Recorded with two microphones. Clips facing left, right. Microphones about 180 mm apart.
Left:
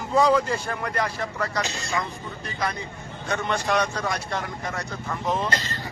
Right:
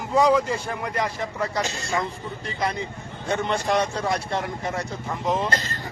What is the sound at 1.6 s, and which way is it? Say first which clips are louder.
Speech: right 2 dB; 45° right (ahead or behind).